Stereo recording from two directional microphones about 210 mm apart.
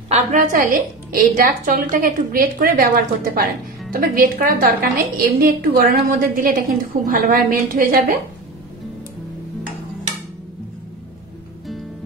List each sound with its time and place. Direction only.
0.1 s a woman's voice: 35° right (ahead or behind)